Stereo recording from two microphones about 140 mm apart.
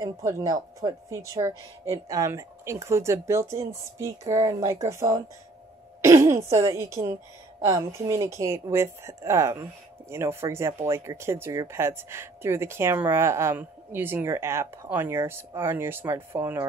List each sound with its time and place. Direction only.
0.0 s speech: 25° right (ahead or behind)